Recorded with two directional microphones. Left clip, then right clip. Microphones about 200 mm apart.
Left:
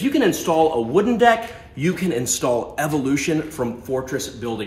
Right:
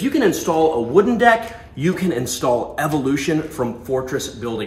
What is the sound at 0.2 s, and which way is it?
Speech, 20° left (ahead or behind).